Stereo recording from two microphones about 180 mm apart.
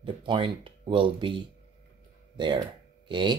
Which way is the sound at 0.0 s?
30° right (ahead or behind).